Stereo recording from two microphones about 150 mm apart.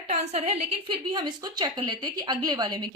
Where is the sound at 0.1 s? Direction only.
45° right (ahead or behind).